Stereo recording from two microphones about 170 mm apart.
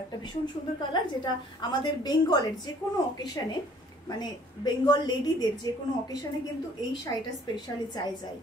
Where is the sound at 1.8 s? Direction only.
25° left (ahead or behind).